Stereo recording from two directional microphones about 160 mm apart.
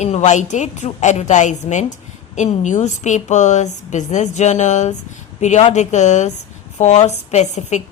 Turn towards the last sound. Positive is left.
turn(degrees=45)  # may be behind; listen again after turning